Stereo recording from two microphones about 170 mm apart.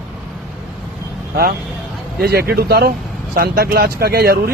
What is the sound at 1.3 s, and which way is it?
Speech, 65° right (ahead or behind).